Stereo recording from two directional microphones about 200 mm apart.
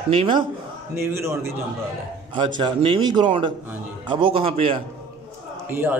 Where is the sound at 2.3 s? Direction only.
25° right (ahead or behind).